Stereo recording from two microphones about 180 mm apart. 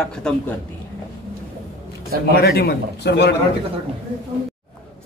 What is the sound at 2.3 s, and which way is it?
A man's voice, 60° left (ahead or behind).